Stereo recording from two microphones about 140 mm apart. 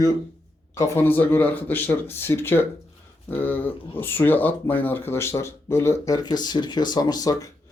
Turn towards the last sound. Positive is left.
turn(degrees=25)  # may be behind; listen again after turning